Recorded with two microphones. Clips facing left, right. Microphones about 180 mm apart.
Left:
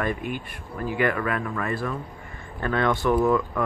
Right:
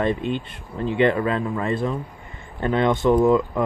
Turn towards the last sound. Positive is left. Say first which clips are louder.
# right 4 dB
turn(degrees=-20)  # may be behind; listen again after turning